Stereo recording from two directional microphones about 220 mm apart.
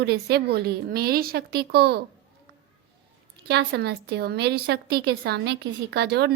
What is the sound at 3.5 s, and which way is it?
A woman's voice, 50° right (ahead or behind).